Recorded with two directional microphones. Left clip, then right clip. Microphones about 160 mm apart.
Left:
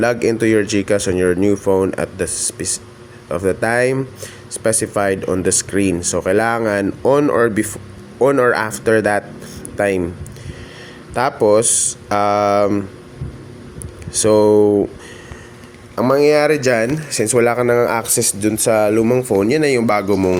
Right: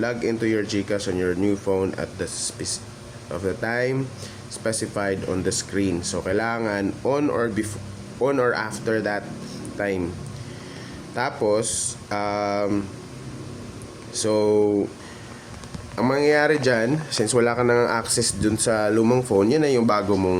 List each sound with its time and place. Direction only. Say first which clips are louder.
0.0 s speech: left 9 dB; 45° left (ahead or behind)
11.1 s speech: left 9 dB; 35° left (ahead or behind)
14.2 s speech: left 8 dB; 35° left (ahead or behind)
16.0 s speech: left 7 dB; 30° left (ahead or behind); by 20.4 s 15° left (ahead or behind)